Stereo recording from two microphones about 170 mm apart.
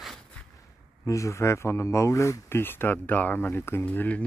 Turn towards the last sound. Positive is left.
turn(degrees=10)  # may be behind; listen again after turning